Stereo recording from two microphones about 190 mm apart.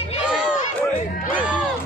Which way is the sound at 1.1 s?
45° left (ahead or behind).